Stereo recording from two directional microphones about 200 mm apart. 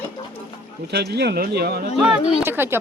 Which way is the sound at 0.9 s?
55° right (ahead or behind).